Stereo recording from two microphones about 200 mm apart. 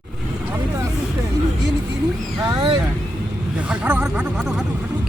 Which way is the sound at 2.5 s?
20° right (ahead or behind).